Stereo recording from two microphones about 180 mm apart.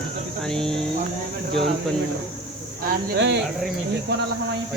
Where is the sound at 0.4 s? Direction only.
5° left (ahead or behind).